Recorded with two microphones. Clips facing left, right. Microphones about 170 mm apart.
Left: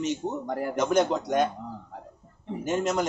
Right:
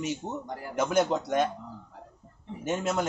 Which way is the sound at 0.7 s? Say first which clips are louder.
Left 1 dB; 5° right (ahead or behind).